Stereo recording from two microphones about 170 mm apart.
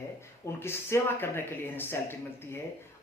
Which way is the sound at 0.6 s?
15° left (ahead or behind).